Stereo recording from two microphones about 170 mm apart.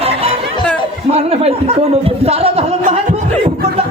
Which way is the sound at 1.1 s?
35° right (ahead or behind).